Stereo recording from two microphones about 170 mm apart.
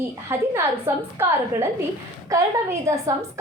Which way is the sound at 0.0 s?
15° right (ahead or behind).